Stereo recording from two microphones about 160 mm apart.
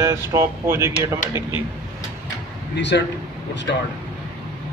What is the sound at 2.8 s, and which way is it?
A man's voice, 90° left.